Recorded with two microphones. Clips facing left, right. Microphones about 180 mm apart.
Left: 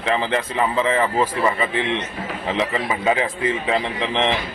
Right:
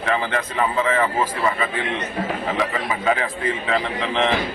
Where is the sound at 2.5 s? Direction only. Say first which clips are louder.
Left 1 dB; 20° left (ahead or behind).